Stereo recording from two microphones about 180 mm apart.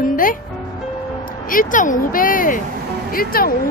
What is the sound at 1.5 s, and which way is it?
A woman's voice, 45° left (ahead or behind).